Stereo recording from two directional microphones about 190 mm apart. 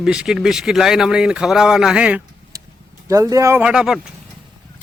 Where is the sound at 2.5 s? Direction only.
15° right (ahead or behind).